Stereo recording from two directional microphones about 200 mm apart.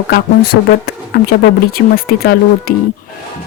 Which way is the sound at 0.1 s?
50° left (ahead or behind).